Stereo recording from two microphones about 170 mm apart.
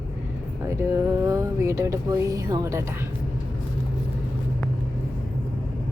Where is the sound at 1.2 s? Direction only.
15° right (ahead or behind).